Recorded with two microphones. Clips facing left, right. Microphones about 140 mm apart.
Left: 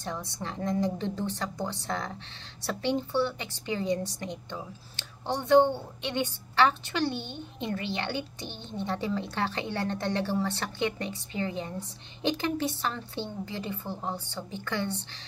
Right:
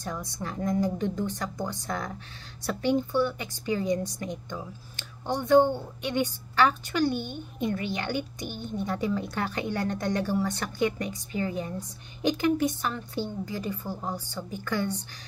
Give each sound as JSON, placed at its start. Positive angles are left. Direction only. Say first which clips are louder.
{"t": 0.0, "sound": "a woman's voice", "louder": "right 1 dB", "side_deg": 30}
{"t": 8.5, "sound": "speech", "louder": "right 6 dB", "side_deg": -10}
{"t": 8.7, "sound": "a woman's voice", "louder": "right 2 dB", "side_deg": 30}